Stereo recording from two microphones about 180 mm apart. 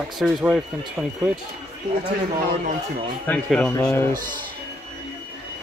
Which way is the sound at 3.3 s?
5° left (ahead or behind).